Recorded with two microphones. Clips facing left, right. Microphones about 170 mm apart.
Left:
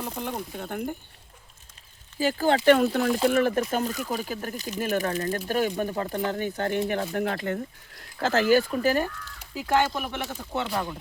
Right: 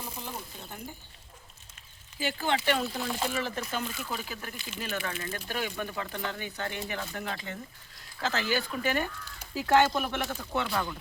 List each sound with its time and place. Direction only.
0.0 s speech: 65° left (ahead or behind)
2.1 s speech: 40° left (ahead or behind)
2.7 s speech: 65° left (ahead or behind); by 9.0 s 35° left (ahead or behind)
9.6 s speech: 10° left (ahead or behind)